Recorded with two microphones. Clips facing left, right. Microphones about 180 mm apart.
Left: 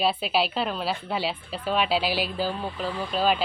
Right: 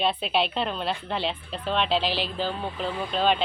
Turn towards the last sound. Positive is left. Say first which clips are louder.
# even
turn(degrees=5)  # may be behind; listen again after turning